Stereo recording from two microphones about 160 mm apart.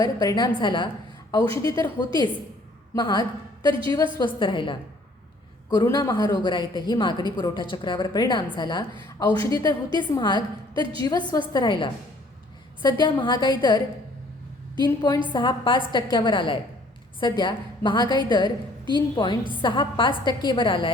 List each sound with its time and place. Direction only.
0.0 s a woman's voice: 25° left (ahead or behind)